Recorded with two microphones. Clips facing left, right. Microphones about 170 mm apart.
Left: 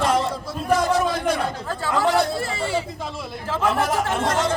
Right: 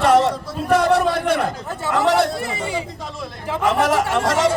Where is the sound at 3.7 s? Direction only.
90° right.